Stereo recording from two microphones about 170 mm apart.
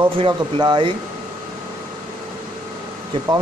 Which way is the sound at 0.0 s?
30° right (ahead or behind).